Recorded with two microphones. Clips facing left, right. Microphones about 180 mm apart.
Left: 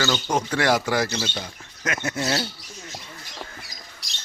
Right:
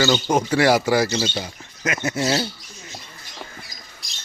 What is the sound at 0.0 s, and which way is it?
Speech, 10° right (ahead or behind).